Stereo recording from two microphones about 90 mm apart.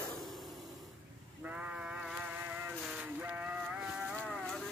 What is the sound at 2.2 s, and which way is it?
Cattle, 15° right (ahead or behind).